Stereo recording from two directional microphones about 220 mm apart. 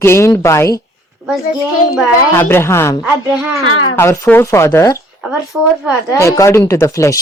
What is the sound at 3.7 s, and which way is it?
Speech, 65° left (ahead or behind).